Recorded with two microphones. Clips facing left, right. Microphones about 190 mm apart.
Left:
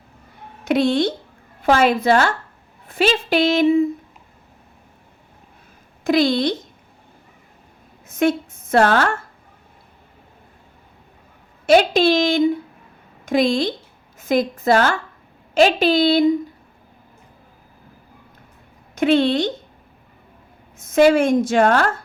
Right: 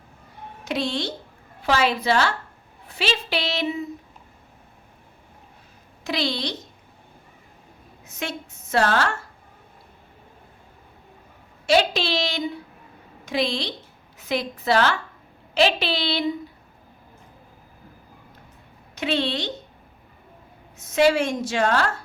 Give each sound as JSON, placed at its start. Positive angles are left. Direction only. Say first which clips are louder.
{"t": 0.6, "sound": "a woman's voice", "louder": "left 9 dB", "side_deg": 55}
{"t": 6.1, "sound": "a woman's voice", "louder": "left 10 dB", "side_deg": 50}
{"t": 8.0, "sound": "a woman's voice", "louder": "left 14 dB", "side_deg": 50}
{"t": 11.6, "sound": "a woman's voice", "louder": "left 7 dB", "side_deg": 50}
{"t": 18.9, "sound": "a woman's voice", "louder": "left 9 dB", "side_deg": 50}
{"t": 20.7, "sound": "a woman's voice", "louder": "left 5 dB", "side_deg": 50}